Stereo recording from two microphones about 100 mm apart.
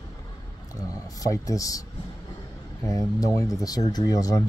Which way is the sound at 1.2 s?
35° left (ahead or behind).